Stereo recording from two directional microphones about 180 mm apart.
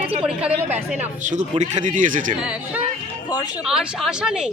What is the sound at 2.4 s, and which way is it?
Speech, 5° right (ahead or behind).